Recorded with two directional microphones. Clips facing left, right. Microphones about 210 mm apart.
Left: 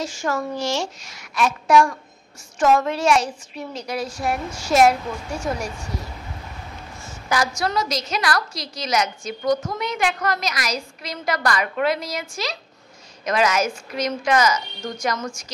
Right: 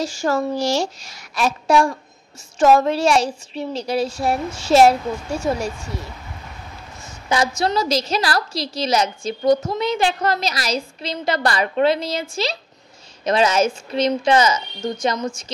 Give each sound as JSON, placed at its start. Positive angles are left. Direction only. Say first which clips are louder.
{"t": 0.0, "sound": "a woman's voice", "louder": "right 4 dB", "side_deg": -35}
{"t": 7.2, "sound": "a woman's voice", "louder": "right 3 dB", "side_deg": -25}